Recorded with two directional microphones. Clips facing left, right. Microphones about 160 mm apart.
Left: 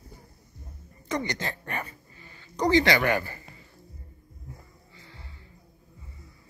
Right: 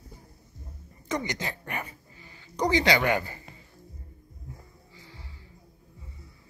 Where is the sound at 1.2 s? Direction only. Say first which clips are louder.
Left 1 dB; 15° right (ahead or behind).